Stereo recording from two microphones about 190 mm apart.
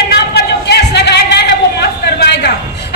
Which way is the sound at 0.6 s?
60° left (ahead or behind).